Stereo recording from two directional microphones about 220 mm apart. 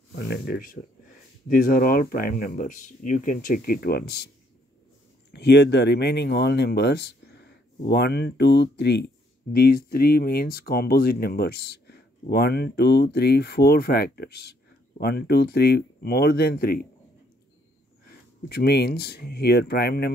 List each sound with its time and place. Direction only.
0.1 s speech: 45° left (ahead or behind)
5.3 s speech: 50° left (ahead or behind)
18.0 s speech: 45° left (ahead or behind)